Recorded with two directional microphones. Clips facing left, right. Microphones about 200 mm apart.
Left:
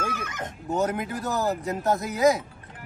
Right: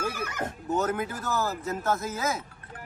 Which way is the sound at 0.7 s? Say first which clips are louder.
Left 2 dB; 15° left (ahead or behind).